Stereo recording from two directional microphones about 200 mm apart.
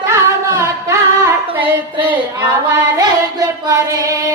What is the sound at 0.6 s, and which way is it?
Singing, 15° right (ahead or behind).